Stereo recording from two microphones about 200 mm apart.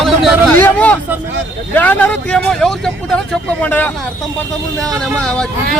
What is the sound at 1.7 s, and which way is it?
A man's voice, 10° left (ahead or behind).